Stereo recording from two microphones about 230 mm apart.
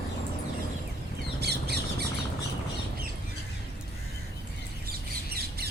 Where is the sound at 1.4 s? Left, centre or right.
Right.